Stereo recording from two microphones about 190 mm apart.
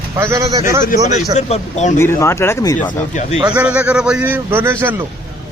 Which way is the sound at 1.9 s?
15° left (ahead or behind).